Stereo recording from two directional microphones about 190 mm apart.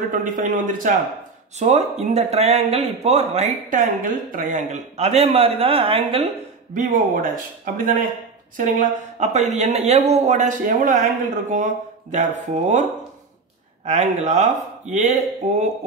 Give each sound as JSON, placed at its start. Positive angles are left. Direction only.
{"t": 0.1, "sound": "speech", "side_deg": -45}
{"t": 6.7, "sound": "speech", "side_deg": -45}
{"t": 13.8, "sound": "speech", "side_deg": -40}